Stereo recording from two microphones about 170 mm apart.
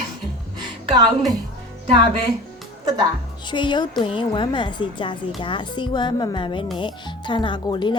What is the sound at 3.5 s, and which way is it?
Speech, 25° left (ahead or behind).